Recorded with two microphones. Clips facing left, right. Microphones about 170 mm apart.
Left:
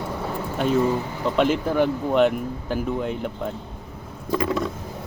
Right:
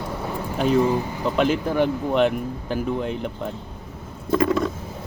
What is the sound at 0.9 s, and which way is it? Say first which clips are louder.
Speech: right 1 dB; 10° right (ahead or behind).